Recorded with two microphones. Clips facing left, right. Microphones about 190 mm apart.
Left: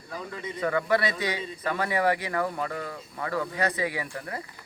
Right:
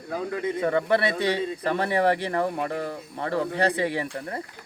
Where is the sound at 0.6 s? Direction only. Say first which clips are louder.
Right 1 dB; 25° right (ahead or behind).